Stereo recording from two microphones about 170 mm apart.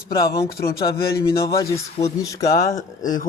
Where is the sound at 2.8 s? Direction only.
50° left (ahead or behind).